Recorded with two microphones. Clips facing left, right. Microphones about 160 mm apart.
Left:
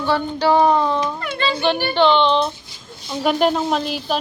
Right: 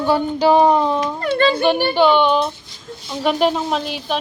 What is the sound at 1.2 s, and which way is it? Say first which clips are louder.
Speech: right 8 dB; 35° right (ahead or behind).